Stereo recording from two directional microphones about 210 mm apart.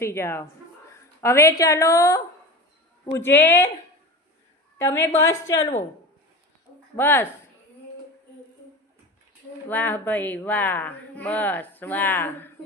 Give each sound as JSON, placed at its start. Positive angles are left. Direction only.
{"t": 0.0, "sound": "speech", "side_deg": 10}
{"t": 4.8, "sound": "speech", "side_deg": 10}
{"t": 6.9, "sound": "speech", "side_deg": 10}
{"t": 9.6, "sound": "speech", "side_deg": 10}